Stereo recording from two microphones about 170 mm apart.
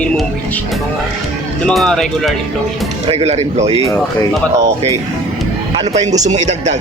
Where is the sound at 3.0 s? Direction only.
40° right (ahead or behind).